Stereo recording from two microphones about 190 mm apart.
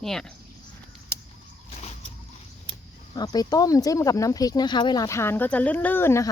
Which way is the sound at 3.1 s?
20° left (ahead or behind).